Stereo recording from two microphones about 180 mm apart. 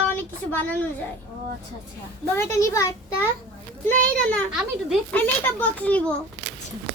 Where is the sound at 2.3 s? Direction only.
15° left (ahead or behind).